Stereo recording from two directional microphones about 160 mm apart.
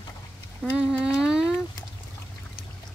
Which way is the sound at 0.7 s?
5° right (ahead or behind).